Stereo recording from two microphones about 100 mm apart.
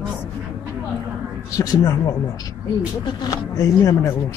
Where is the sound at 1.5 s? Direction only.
35° left (ahead or behind).